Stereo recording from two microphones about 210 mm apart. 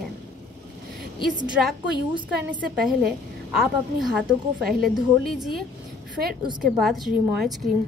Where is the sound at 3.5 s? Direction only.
Centre (ahead or behind).